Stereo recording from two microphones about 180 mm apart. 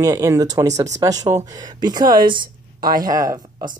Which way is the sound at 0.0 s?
20° right (ahead or behind).